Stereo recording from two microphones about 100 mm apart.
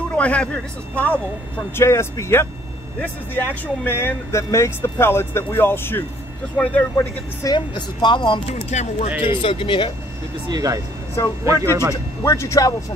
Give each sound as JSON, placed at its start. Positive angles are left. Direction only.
{"t": 0.1, "sound": "speech", "side_deg": 15}
{"t": 1.8, "sound": "speech", "side_deg": 30}
{"t": 7.4, "sound": "a woman's voice", "side_deg": 50}
{"t": 10.5, "sound": "speech", "side_deg": -35}
{"t": 11.9, "sound": "speech", "side_deg": 30}